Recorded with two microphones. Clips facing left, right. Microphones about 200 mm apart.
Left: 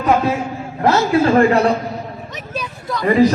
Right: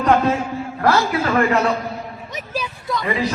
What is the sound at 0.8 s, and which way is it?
Speech, 20° left (ahead or behind).